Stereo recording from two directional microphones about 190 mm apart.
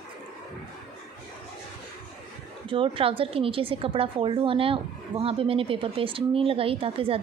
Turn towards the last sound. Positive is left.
turn(degrees=-30)  # may be behind; listen again after turning